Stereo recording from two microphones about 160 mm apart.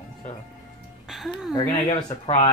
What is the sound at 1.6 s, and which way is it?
Speech, 20° left (ahead or behind).